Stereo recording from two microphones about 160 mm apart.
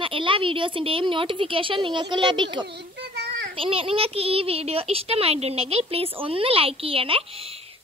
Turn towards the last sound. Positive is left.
turn(degrees=-35)  # may be behind; listen again after turning